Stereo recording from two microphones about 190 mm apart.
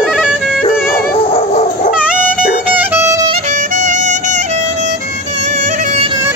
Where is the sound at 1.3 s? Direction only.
35° left (ahead or behind).